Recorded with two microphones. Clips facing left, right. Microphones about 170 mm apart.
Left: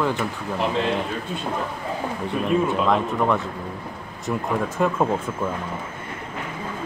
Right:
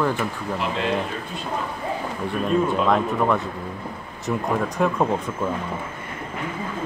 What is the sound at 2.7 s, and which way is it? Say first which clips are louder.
Speech: right 1 dB; centre (ahead or behind).